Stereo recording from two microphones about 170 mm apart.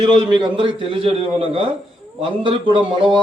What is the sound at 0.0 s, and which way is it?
A man's voice, 30° right (ahead or behind).